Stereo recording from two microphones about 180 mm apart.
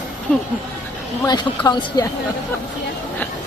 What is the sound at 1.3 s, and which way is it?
Speech, 25° left (ahead or behind).